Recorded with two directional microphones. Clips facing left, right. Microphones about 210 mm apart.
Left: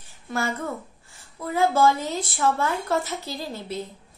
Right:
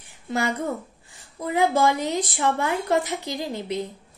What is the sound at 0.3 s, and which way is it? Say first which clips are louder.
A woman's voice: right 3 dB; 15° right (ahead or behind).